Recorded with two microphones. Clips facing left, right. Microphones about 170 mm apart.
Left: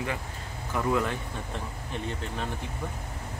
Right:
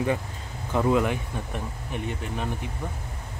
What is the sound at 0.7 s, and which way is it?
Speech, 20° right (ahead or behind).